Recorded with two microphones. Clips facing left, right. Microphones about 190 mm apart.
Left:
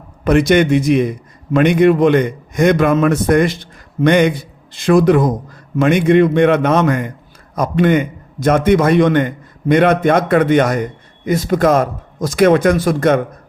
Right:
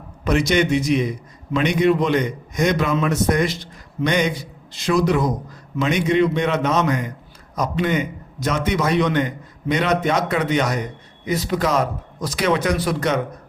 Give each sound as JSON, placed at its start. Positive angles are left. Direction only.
{"t": 0.3, "sound": "a man's voice", "side_deg": 55}